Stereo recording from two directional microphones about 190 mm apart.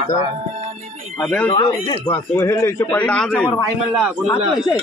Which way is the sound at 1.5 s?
25° left (ahead or behind).